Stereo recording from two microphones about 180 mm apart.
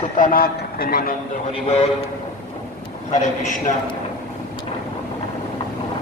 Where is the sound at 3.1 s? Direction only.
40° left (ahead or behind).